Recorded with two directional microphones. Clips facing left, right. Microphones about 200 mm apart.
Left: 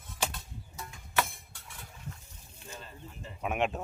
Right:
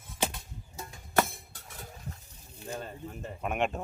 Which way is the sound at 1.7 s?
40° right (ahead or behind).